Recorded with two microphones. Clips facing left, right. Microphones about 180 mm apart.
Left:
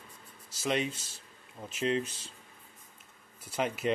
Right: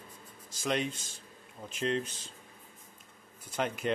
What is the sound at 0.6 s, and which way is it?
Speech, 5° left (ahead or behind).